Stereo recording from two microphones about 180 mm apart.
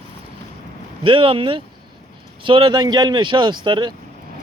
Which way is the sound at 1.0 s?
30° right (ahead or behind).